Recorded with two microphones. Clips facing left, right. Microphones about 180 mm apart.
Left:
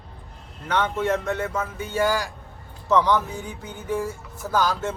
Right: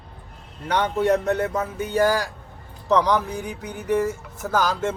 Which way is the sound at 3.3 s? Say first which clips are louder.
Right 4 dB; 15° right (ahead or behind).